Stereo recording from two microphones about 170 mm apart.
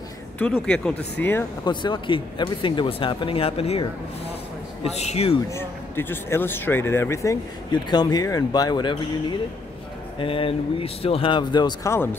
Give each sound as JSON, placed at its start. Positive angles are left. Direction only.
{"t": 0.4, "sound": "speech", "side_deg": 10}
{"t": 1.6, "sound": "speech", "side_deg": 25}
{"t": 4.8, "sound": "a man's voice", "side_deg": 40}
{"t": 5.5, "sound": "speech", "side_deg": 15}